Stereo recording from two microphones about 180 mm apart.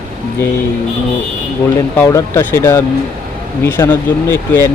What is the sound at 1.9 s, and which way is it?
Speech, 15° left (ahead or behind).